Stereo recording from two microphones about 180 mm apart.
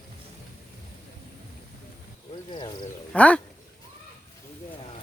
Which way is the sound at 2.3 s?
25° left (ahead or behind).